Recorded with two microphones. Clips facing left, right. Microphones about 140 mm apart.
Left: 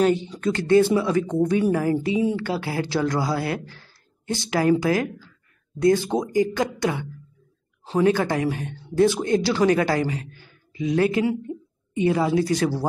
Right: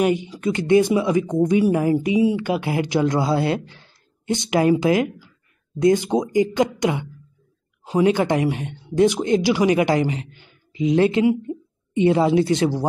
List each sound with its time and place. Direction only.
0.0 s speech: 15° right (ahead or behind)